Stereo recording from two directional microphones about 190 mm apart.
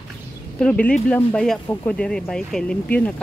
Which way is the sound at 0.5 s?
5° left (ahead or behind).